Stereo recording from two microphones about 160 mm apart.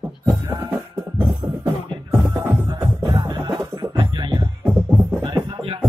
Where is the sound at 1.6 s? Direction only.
15° right (ahead or behind).